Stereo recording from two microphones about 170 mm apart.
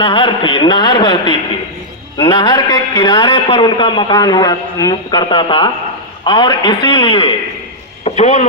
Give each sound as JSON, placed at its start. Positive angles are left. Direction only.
{"t": 0.0, "sound": "a man's voice", "side_deg": 30}